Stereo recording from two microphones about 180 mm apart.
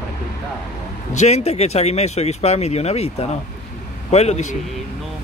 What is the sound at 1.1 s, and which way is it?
Speech, 40° left (ahead or behind).